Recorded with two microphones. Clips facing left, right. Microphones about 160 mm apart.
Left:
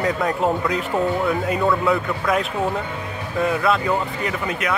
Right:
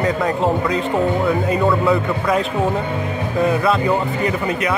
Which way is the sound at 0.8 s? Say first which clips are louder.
Right 3 dB; 25° right (ahead or behind).